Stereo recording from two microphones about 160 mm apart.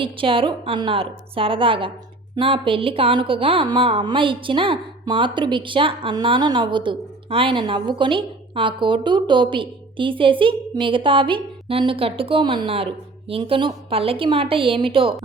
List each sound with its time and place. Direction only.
0.0 s a woman's voice: 35° right (ahead or behind)